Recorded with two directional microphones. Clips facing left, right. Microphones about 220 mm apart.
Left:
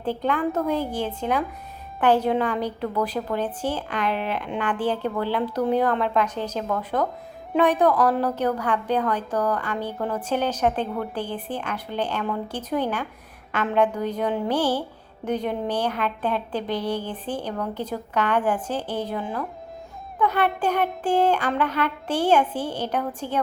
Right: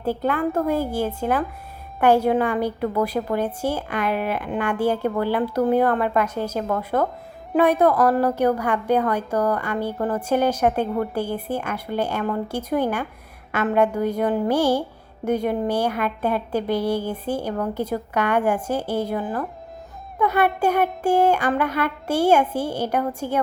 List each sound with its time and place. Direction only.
0.0 s a woman's voice: 10° right (ahead or behind)